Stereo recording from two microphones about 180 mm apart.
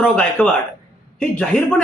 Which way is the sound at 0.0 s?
5° left (ahead or behind).